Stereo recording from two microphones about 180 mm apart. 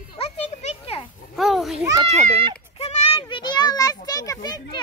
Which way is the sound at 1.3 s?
Centre (ahead or behind).